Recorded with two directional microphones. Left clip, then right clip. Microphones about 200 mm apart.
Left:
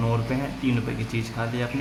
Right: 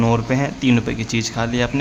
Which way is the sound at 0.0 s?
40° right (ahead or behind).